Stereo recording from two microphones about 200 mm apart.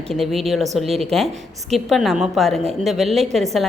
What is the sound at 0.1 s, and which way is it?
A woman's voice, centre (ahead or behind).